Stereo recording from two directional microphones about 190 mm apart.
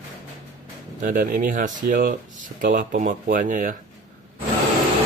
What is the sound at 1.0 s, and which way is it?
Speech, 45° right (ahead or behind).